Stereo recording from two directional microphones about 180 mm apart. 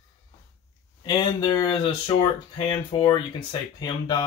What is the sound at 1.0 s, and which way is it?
Speech, 25° left (ahead or behind).